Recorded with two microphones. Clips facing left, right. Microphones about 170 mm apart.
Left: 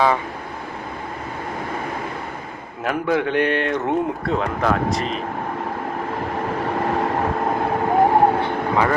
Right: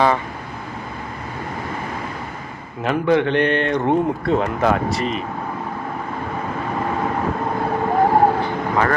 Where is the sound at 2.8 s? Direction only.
5° left (ahead or behind).